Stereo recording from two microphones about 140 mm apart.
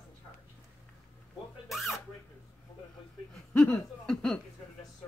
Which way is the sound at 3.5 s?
10° left (ahead or behind).